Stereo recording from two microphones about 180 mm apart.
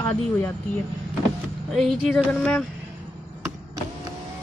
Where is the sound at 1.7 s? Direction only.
Centre (ahead or behind).